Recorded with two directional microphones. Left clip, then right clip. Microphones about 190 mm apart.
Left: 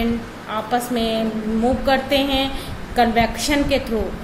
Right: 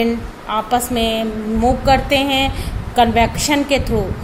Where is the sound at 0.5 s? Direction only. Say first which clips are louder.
Right 4 dB; 30° right (ahead or behind).